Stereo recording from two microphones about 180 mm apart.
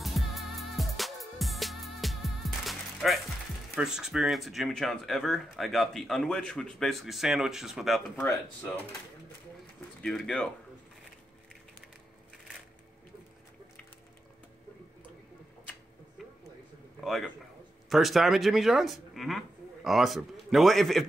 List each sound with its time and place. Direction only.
0.0 s music: centre (ahead or behind)
3.7 s speech: 5° right (ahead or behind)
10.0 s speech: 5° left (ahead or behind)
16.2 s a sound: centre (ahead or behind)
17.0 s a man's voice: centre (ahead or behind)